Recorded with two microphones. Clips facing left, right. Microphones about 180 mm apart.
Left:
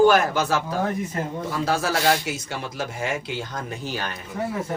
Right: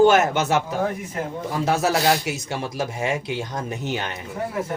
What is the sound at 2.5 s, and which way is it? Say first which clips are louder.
Speech: right 3 dB; 25° right (ahead or behind).